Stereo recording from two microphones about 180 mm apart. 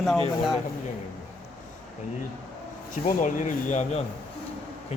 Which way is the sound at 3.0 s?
45° left (ahead or behind).